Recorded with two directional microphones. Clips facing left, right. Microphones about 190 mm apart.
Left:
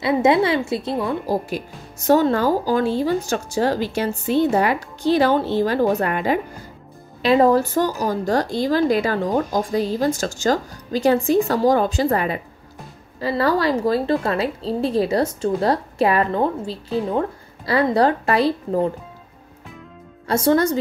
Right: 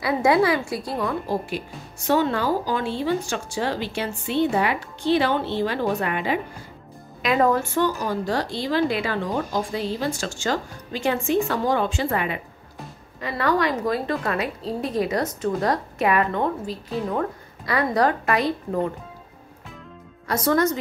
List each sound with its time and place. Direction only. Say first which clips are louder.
0.0 s a woman's voice: left 2 dB; 25° left (ahead or behind)
1.2 s a woman's voice: left 3 dB; 40° left (ahead or behind)
7.2 s a woman's voice: left 5 dB; 30° left (ahead or behind)
20.2 s a woman's voice: left 4 dB; 30° left (ahead or behind)